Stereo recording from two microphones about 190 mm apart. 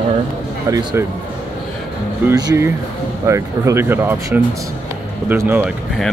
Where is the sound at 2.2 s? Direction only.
20° right (ahead or behind).